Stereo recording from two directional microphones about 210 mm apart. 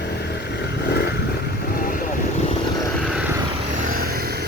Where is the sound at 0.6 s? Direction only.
50° left (ahead or behind).